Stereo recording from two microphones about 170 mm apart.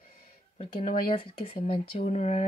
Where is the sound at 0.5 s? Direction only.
40° left (ahead or behind).